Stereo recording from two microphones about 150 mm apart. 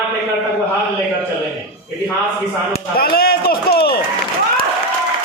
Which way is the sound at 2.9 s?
90° left.